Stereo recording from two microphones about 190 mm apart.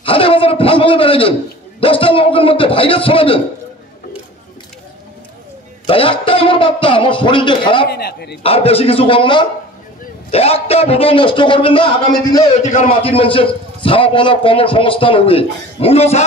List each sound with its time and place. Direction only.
0.0 s a sound: 30° left (ahead or behind)
1.8 s a man's voice: 30° left (ahead or behind)
5.9 s a man's voice: 30° left (ahead or behind)
7.9 s a man's voice: 55° left (ahead or behind)
8.4 s a man's voice: 30° left (ahead or behind)